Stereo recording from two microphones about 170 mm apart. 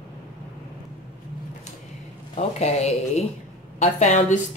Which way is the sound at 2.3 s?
40° left (ahead or behind).